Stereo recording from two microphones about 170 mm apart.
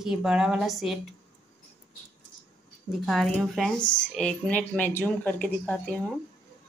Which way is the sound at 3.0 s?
Centre (ahead or behind).